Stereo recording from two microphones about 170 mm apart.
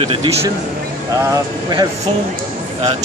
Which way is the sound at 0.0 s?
35° right (ahead or behind).